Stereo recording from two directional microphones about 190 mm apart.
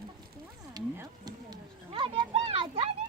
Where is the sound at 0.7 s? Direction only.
20° right (ahead or behind).